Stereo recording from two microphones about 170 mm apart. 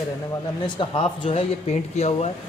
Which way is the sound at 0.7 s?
35° left (ahead or behind).